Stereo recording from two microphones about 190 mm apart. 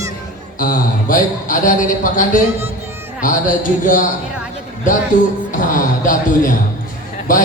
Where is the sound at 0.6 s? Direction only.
45° left (ahead or behind).